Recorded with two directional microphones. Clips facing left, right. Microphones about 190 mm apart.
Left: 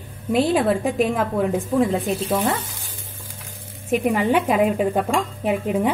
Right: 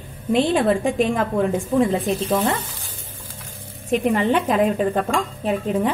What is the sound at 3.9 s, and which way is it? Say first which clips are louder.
A woman's voice: even; 10° left (ahead or behind).